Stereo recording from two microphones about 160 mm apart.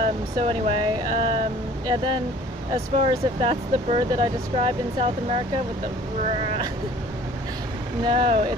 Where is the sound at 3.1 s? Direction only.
35° right (ahead or behind).